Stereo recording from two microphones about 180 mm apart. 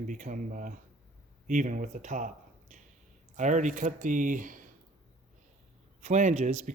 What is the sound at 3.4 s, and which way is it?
Speech, 40° right (ahead or behind).